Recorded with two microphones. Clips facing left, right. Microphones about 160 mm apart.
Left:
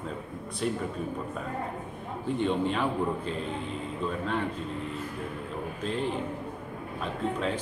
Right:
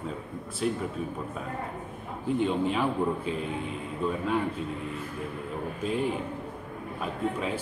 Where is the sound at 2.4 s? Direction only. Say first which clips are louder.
Even; 5° right (ahead or behind).